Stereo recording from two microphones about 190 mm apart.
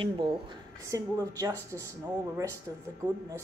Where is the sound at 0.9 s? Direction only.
20° right (ahead or behind).